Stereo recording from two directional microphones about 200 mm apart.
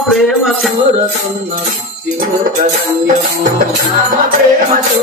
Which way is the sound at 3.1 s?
40° right (ahead or behind).